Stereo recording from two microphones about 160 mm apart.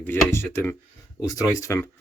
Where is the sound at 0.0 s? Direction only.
15° left (ahead or behind).